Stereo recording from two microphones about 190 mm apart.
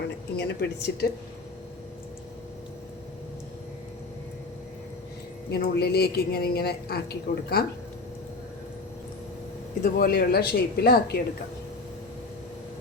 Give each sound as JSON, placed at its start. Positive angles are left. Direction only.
{"t": 0.3, "sound": "a woman's voice", "side_deg": 60}
{"t": 5.5, "sound": "a woman's voice", "side_deg": 55}
{"t": 9.8, "sound": "a woman's voice", "side_deg": 50}